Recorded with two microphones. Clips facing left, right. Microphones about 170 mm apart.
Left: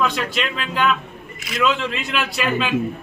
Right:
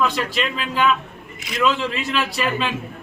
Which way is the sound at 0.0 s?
Centre (ahead or behind).